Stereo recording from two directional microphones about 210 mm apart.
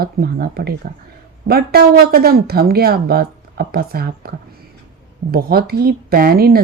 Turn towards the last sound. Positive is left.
turn(degrees=-45)  # may be behind; listen again after turning